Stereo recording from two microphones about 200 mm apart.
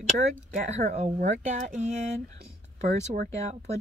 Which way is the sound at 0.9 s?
35° right (ahead or behind).